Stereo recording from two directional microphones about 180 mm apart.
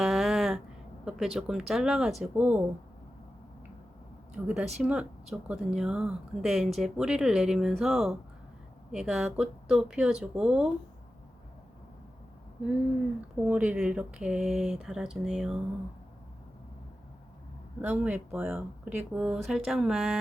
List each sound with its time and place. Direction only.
0.0 s a sound: centre (ahead or behind)
1.0 s speech: centre (ahead or behind)
4.4 s speech: 5° right (ahead or behind)
13.4 s speech: 5° right (ahead or behind)
17.8 s speech: 10° right (ahead or behind)